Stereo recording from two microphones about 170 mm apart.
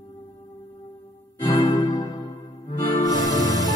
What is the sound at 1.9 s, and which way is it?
Music, 20° left (ahead or behind).